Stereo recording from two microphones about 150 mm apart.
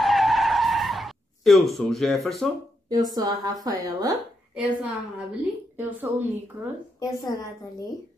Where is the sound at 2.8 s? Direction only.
25° right (ahead or behind).